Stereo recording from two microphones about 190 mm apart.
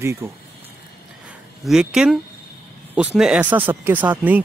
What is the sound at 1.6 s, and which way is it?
Speech, 5° right (ahead or behind).